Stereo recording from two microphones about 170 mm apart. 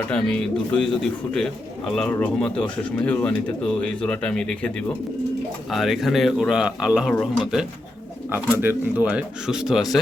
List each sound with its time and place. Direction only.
0.1 s speech: 5° left (ahead or behind)
2.0 s speech: 10° left (ahead or behind)
5.7 s a man's voice: centre (ahead or behind)
8.3 s a man's voice: 10° right (ahead or behind)